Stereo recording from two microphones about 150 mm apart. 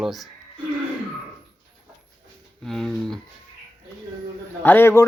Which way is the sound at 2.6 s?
Centre (ahead or behind).